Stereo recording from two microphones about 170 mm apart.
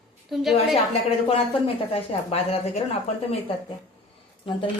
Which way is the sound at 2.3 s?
35° left (ahead or behind).